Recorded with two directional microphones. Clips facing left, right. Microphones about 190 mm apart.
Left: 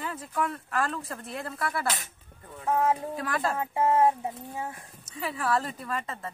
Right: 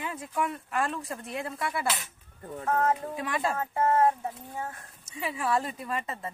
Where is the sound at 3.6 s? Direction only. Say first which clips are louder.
Left 1 dB; 15° left (ahead or behind).